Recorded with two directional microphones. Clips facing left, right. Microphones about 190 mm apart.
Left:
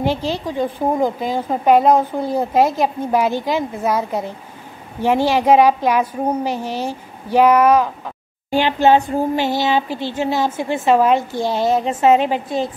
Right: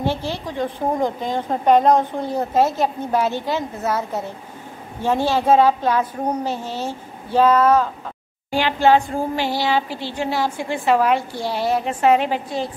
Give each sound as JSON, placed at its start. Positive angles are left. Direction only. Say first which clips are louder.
{"t": 0.0, "sound": "a woman's voice", "louder": "left 3 dB", "side_deg": 15}